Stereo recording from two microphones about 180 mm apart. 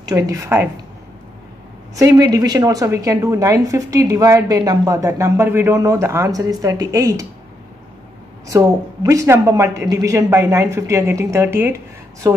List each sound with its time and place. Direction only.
0.0 s a woman's voice: 15° right (ahead or behind)
2.0 s a woman's voice: 20° right (ahead or behind)
8.5 s a woman's voice: 15° right (ahead or behind)